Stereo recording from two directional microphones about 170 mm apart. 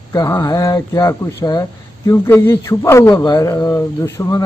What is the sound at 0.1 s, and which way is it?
Speech, 20° left (ahead or behind).